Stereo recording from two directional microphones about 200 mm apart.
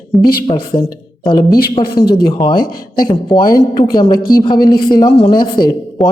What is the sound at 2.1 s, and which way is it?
A woman's voice, 25° left (ahead or behind).